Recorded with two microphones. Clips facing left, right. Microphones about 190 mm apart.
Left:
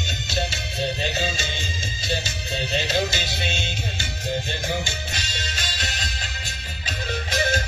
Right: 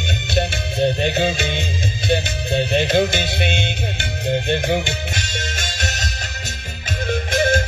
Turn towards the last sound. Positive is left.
turn(degrees=-50)  # may be behind; listen again after turning